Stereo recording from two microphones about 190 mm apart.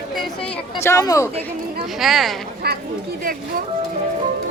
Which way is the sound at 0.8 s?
15° left (ahead or behind).